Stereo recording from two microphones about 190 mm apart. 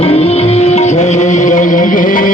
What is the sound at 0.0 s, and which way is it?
Music, 35° left (ahead or behind).